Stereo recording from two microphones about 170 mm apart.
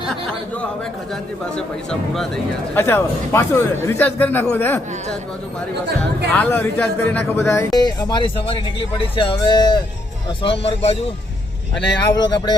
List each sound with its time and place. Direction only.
1.1 s speech: 5° left (ahead or behind)
2.8 s a man's voice: 15° left (ahead or behind)
6.3 s a man's voice: 10° left (ahead or behind); by 10.9 s 35° left (ahead or behind)
12.1 s speech: 25° left (ahead or behind)